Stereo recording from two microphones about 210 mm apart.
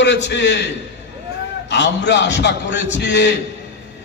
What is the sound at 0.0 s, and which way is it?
Speech, 55° left (ahead or behind).